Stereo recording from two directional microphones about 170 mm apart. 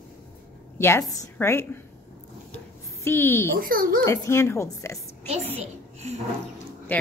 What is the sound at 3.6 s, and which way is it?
Speech, 60° right (ahead or behind).